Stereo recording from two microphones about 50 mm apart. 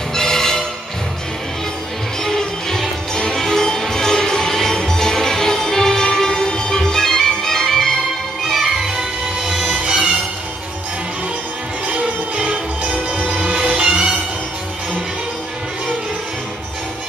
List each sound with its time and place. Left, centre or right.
0.1 s music: centre
2.2 s music: centre
8.5 s music: centre
11.9 s music: right